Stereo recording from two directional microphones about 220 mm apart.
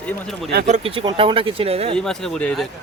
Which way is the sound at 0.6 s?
30° right (ahead or behind).